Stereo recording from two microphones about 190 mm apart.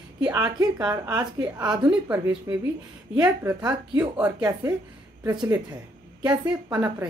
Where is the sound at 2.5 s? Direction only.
20° right (ahead or behind).